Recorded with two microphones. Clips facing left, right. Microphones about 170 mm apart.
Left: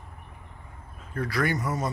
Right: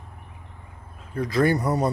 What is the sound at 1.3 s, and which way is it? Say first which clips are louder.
Speech: right 7 dB; 35° right (ahead or behind).